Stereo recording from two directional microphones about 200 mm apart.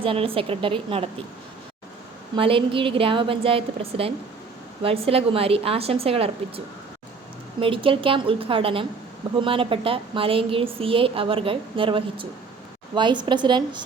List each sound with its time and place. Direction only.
0.0 s a woman's voice: 25° right (ahead or behind)
2.3 s a woman's voice: 25° right (ahead or behind)
7.6 s a woman's voice: 25° right (ahead or behind)